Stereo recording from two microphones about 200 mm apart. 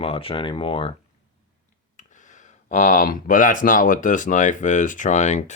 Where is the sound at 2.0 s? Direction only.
40° left (ahead or behind).